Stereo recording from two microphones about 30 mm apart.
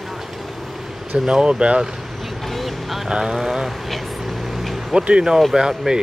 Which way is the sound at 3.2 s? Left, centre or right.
Centre.